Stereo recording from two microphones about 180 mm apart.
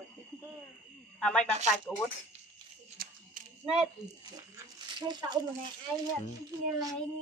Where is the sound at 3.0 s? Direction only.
55° right (ahead or behind).